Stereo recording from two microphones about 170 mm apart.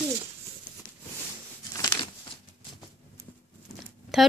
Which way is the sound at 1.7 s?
25° left (ahead or behind).